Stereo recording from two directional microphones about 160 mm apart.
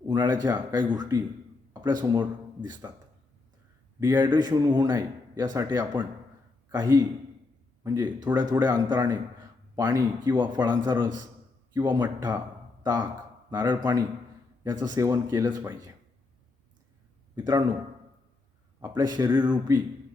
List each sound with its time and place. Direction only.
0.1 s a man's voice: 25° right (ahead or behind)
1.7 s a sound: 25° right (ahead or behind)
2.1 s speech: 25° right (ahead or behind)
4.0 s a man's voice: 25° right (ahead or behind)
17.3 s a man's voice: 25° right (ahead or behind)
18.8 s a man's voice: 25° right (ahead or behind)